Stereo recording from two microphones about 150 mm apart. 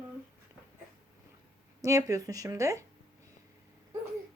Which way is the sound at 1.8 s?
20° right (ahead or behind).